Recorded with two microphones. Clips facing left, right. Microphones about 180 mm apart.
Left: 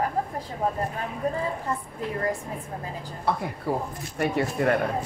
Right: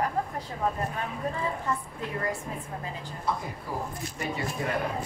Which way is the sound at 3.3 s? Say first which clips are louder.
Left 6 dB; 65° left (ahead or behind).